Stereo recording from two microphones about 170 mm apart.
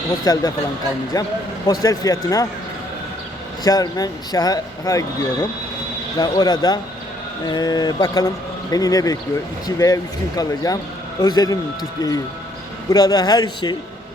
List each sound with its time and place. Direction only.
0.3 s speech: 20° left (ahead or behind)
3.6 s speech: 20° left (ahead or behind)